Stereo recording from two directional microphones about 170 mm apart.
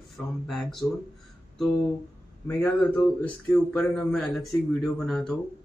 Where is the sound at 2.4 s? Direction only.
10° left (ahead or behind).